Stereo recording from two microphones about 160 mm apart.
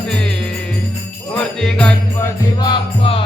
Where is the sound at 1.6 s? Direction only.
5° left (ahead or behind).